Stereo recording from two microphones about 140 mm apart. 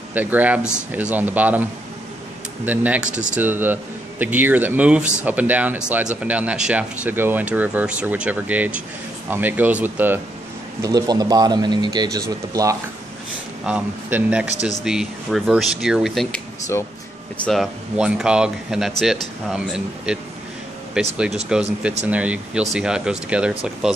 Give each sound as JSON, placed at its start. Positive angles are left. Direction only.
{"t": 0.1, "sound": "speech", "side_deg": -10}
{"t": 10.8, "sound": "a man's voice", "side_deg": -25}
{"t": 13.7, "sound": "speech", "side_deg": -10}
{"t": 17.5, "sound": "speech", "side_deg": -5}